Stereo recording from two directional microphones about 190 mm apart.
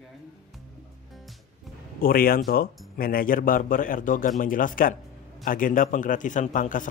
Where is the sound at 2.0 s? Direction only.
50° left (ahead or behind).